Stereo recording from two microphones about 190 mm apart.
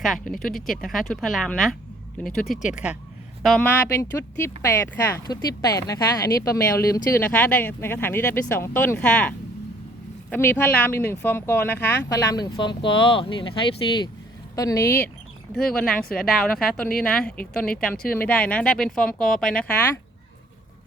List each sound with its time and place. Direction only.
0.3 s speech: centre (ahead or behind)
3.4 s speech: 5° left (ahead or behind)